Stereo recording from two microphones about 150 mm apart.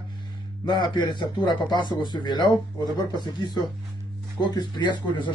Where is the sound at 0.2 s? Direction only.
30° left (ahead or behind).